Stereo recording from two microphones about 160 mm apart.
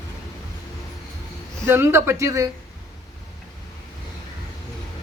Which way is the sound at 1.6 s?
15° right (ahead or behind).